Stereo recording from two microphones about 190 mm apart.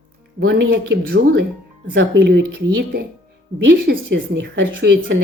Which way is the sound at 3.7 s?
50° right (ahead or behind).